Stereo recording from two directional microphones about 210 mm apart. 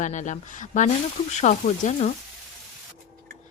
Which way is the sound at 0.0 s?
35° left (ahead or behind).